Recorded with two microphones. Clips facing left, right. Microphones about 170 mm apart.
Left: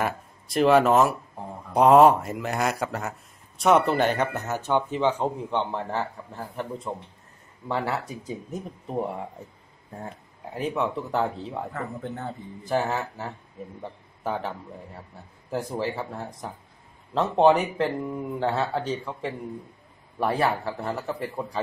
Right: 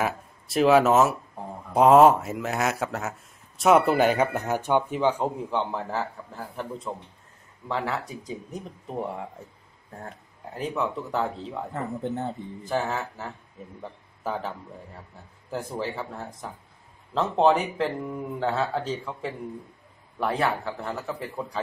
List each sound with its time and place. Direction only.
0.0 s speech: 5° right (ahead or behind)
10.0 s speech: 5° left (ahead or behind)
11.7 s speech: 25° right (ahead or behind)
12.6 s speech: 5° left (ahead or behind)
15.8 s speech: centre (ahead or behind)